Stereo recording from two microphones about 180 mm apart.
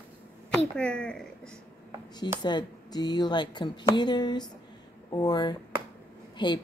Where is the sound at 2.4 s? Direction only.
25° left (ahead or behind).